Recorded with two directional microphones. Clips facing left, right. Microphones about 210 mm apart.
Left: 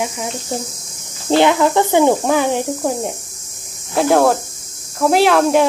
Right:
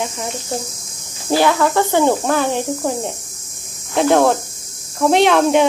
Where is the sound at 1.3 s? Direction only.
20° left (ahead or behind).